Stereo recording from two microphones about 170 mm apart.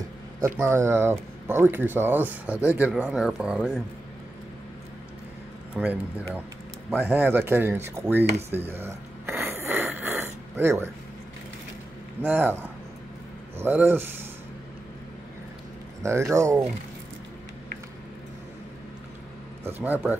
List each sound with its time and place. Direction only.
0.6 s speech: 15° right (ahead or behind)
5.8 s speech: 5° right (ahead or behind)
8.5 s snoring: 15° right (ahead or behind)
12.2 s speech: 10° right (ahead or behind)
16.0 s speech: 15° right (ahead or behind)
19.6 s speech: 10° right (ahead or behind)